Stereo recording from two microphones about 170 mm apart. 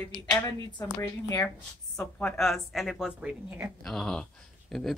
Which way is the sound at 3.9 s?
5° left (ahead or behind).